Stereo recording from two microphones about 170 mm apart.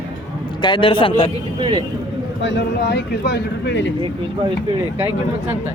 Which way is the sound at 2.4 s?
90° left.